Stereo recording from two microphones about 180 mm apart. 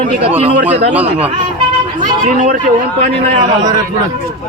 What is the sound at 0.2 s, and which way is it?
Speech, 35° right (ahead or behind).